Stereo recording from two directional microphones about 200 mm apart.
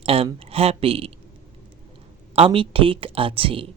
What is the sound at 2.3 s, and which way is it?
Speech, 25° right (ahead or behind).